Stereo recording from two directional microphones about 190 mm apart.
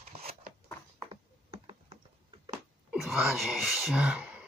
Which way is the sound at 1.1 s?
30° right (ahead or behind).